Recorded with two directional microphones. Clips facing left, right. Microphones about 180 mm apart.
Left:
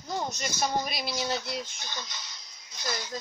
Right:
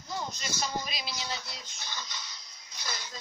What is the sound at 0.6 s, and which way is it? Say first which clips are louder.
Speech: left 6 dB; 55° left (ahead or behind).